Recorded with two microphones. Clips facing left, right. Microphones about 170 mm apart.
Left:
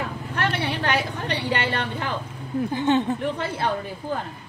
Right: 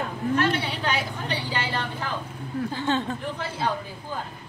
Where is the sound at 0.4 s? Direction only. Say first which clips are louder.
Left 4 dB; 65° left (ahead or behind).